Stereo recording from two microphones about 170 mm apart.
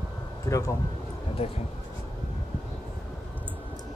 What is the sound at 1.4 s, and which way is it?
Speech, 35° left (ahead or behind).